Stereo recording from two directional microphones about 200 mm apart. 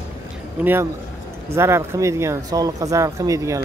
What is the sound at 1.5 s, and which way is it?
Speech, 15° right (ahead or behind).